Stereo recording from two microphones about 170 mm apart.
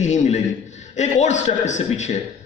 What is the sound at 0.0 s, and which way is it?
A man's voice, 45° left (ahead or behind).